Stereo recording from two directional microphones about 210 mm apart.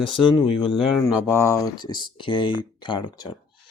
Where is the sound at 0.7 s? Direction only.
Centre (ahead or behind).